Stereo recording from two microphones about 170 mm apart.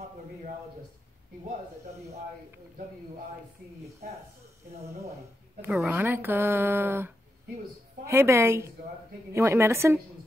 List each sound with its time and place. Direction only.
5.6 s speech: 5° right (ahead or behind)
8.1 s speech: 15° right (ahead or behind)